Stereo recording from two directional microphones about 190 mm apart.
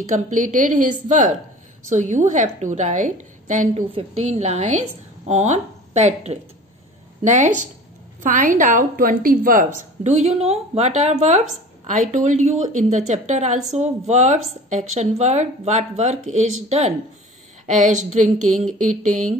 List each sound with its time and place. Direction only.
0.1 s a woman's voice: 40° right (ahead or behind)